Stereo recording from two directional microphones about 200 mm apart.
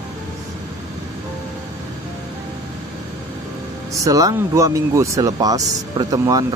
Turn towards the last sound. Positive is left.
turn(degrees=-20)  # may be behind; listen again after turning